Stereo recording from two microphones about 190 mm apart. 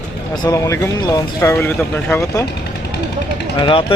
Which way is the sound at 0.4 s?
20° left (ahead or behind).